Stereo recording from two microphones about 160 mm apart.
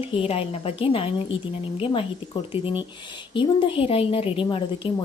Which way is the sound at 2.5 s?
35° left (ahead or behind).